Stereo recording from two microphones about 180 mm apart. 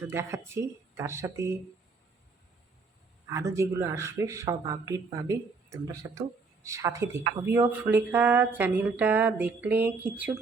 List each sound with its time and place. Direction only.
0.1 s speech: 15° right (ahead or behind)
3.2 s speech: 15° right (ahead or behind)